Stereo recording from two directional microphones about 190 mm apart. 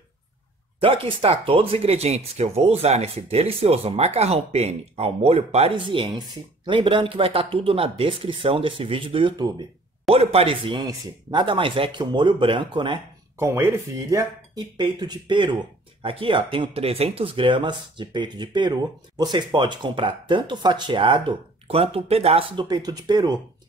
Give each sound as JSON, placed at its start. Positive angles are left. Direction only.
{"t": 0.7, "sound": "speech", "side_deg": -30}